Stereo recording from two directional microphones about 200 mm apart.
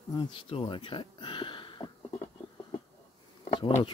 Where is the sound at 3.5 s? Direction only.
25° left (ahead or behind).